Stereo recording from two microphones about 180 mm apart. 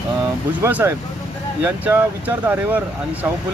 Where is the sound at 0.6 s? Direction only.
10° right (ahead or behind).